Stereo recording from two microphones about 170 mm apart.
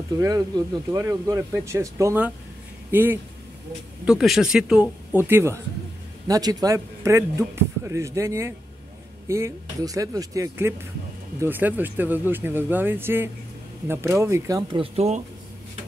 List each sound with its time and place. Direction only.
0.2 s speech: 20° right (ahead or behind)
14.8 s speech: 40° right (ahead or behind)